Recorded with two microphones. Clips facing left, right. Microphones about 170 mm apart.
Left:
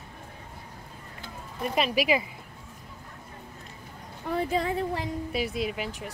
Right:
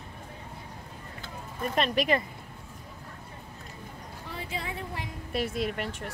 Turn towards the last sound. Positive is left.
turn(degrees=0)  # may be behind; listen again after turning